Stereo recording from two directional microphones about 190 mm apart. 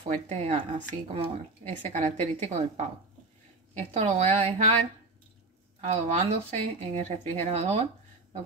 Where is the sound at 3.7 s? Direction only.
35° right (ahead or behind).